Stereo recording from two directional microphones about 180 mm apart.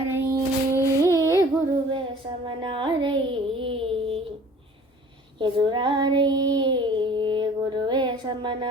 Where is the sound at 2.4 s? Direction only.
25° right (ahead or behind).